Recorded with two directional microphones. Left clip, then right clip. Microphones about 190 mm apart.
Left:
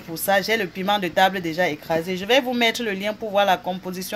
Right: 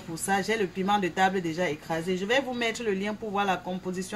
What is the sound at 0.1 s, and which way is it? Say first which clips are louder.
Speech: left 7 dB; 55° left (ahead or behind).